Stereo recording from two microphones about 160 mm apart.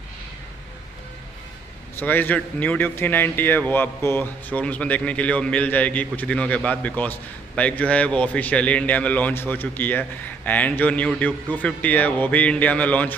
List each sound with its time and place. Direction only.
2.0 s speech: 10° left (ahead or behind)